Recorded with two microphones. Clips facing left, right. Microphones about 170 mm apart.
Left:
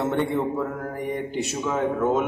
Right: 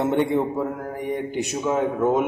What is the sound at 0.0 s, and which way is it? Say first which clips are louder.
Speech: right 3 dB; 15° right (ahead or behind).